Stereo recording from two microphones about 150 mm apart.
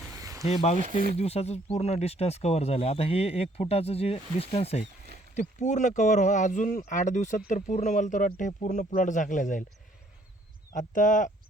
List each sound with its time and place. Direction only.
0.2 s a sound: 20° right (ahead or behind)
0.4 s speech: 45° left (ahead or behind)
0.8 s speech: 65° right (ahead or behind)
1.1 s speech: 45° left (ahead or behind)
5.3 s speech: 50° left (ahead or behind)
10.7 s speech: 60° left (ahead or behind)